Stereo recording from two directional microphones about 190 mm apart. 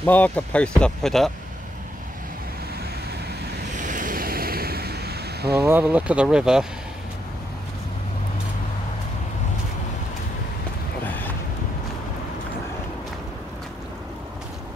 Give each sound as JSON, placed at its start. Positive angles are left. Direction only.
{"t": 0.0, "sound": "speech", "side_deg": 10}
{"t": 3.7, "sound": "waves", "side_deg": -45}
{"t": 5.6, "sound": "speech", "side_deg": -10}